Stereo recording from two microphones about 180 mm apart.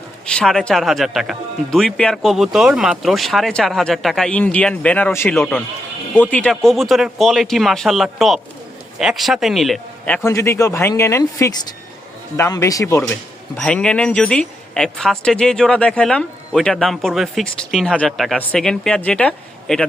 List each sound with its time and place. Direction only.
0.3 s speech: 5° left (ahead or behind)
10.2 s speech: 15° left (ahead or behind)
13.6 s speech: 5° left (ahead or behind)